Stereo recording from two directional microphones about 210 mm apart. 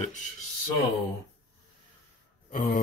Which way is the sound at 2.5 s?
40° left (ahead or behind).